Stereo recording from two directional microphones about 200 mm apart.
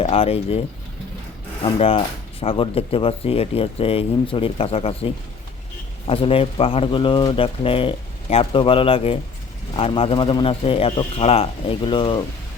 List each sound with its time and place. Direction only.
0.0 s speech: 30° left (ahead or behind)
1.6 s speech: 30° left (ahead or behind)
6.1 s speech: 30° left (ahead or behind)